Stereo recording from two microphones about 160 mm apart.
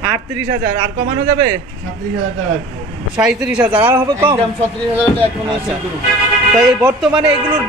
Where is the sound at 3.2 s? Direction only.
5° right (ahead or behind).